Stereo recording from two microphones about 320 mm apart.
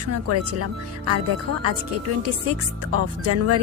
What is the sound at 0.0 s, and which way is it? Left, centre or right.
Speech, right.